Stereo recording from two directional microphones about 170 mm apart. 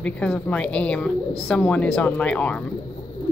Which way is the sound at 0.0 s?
10° left (ahead or behind).